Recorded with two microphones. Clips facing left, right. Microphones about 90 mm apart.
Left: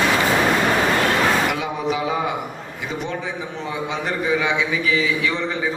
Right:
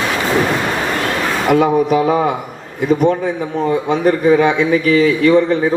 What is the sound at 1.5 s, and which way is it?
A man's voice, 50° right (ahead or behind).